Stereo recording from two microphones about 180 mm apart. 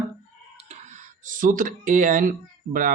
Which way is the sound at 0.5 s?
40° right (ahead or behind).